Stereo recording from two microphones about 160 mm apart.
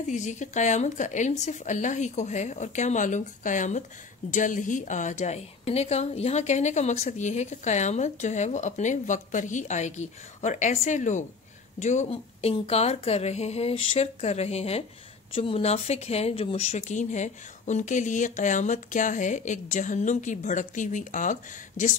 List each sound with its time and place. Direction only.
0.1 s a woman's voice: 50° left (ahead or behind)